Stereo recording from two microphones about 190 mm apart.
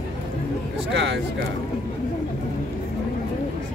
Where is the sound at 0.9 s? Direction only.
70° right (ahead or behind).